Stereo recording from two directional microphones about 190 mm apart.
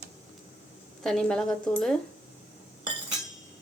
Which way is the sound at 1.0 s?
Centre (ahead or behind).